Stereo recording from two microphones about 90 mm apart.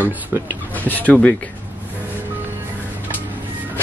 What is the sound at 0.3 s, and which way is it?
Speech, 25° right (ahead or behind).